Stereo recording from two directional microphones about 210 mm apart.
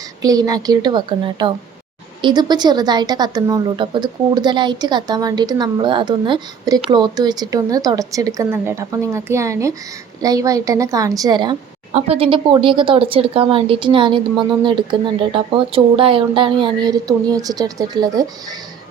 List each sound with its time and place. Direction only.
0.2 s a woman's voice: 15° right (ahead or behind)